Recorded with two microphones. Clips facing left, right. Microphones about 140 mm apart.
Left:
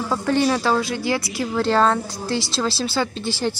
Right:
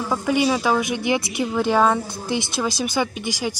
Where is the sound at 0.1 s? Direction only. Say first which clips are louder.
Even; 10° right (ahead or behind).